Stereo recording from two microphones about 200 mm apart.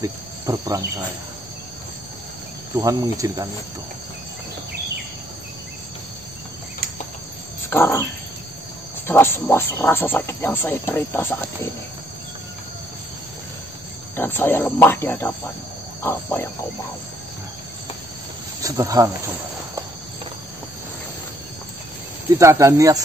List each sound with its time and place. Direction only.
0.0 s cricket: 15° right (ahead or behind)
2.8 s speech: 15° right (ahead or behind)
7.7 s wild animals: 10° left (ahead or behind)
9.0 s speech: 10° left (ahead or behind)
14.1 s speech: 10° left (ahead or behind)
18.6 s speech: 15° right (ahead or behind)
22.4 s speech: 15° right (ahead or behind)